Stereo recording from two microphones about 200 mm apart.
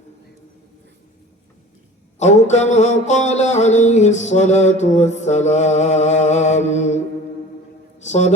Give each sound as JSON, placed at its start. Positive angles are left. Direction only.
{"t": 2.1, "sound": "music", "side_deg": 35}
{"t": 8.0, "sound": "a man's voice", "side_deg": 35}